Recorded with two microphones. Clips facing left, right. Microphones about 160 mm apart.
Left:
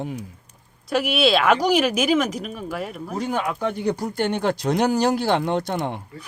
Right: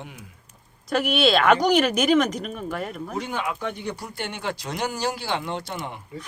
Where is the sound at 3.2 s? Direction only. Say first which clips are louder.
Left 7 dB; 40° left (ahead or behind).